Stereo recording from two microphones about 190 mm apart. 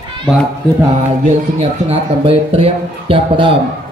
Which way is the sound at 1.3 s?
30° right (ahead or behind).